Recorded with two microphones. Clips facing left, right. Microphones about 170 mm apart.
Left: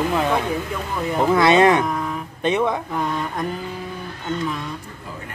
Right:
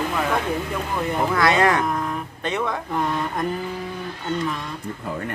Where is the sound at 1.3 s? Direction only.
20° left (ahead or behind).